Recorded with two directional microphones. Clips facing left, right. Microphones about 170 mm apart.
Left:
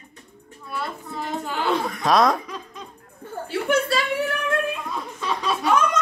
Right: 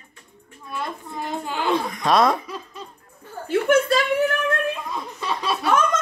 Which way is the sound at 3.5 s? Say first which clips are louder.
Right 4 dB; 45° right (ahead or behind).